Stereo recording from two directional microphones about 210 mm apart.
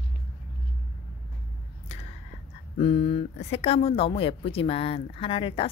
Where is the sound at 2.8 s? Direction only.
25° left (ahead or behind).